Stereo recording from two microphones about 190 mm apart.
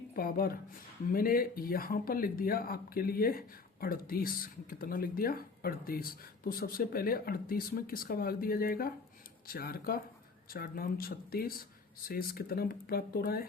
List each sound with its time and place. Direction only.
0.2 s speech: 50° left (ahead or behind)